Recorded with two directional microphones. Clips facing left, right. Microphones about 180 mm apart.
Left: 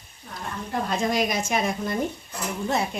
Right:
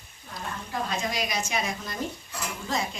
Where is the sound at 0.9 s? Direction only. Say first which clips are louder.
Left 8 dB; 55° left (ahead or behind).